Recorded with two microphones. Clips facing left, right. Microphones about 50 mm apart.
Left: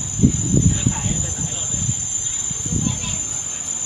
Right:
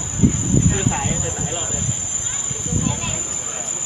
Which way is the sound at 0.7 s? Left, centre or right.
Right.